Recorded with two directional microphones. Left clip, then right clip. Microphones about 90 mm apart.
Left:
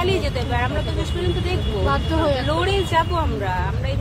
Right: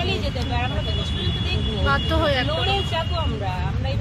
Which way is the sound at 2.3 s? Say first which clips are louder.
Left 3 dB; 40° left (ahead or behind).